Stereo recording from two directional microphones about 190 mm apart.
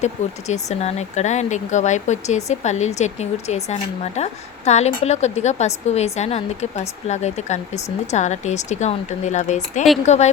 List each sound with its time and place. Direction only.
0.0 s speech: 35° left (ahead or behind)